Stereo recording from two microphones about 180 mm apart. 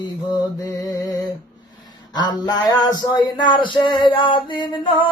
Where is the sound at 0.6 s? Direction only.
20° left (ahead or behind).